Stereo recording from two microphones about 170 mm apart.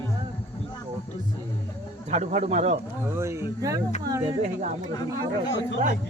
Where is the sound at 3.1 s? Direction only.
15° right (ahead or behind).